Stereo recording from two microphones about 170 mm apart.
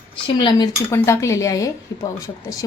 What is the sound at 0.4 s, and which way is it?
A woman's voice, 25° left (ahead or behind).